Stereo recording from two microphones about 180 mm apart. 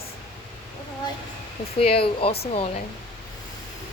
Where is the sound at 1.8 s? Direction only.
30° left (ahead or behind).